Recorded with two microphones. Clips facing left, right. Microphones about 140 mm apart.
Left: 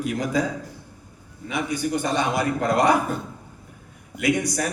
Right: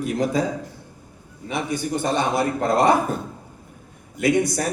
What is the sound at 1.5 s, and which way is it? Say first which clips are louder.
A man's voice: even; 25° right (ahead or behind).